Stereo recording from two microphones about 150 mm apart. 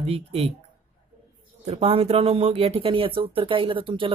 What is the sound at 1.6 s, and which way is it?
Speech, 40° right (ahead or behind).